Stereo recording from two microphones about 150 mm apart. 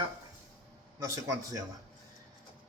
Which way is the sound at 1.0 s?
20° right (ahead or behind).